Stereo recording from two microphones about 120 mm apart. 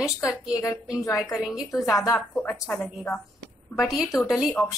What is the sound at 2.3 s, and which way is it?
Speech, 15° left (ahead or behind).